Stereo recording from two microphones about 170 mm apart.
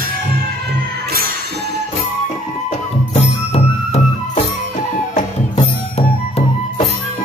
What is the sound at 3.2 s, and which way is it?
Music, 40° left (ahead or behind).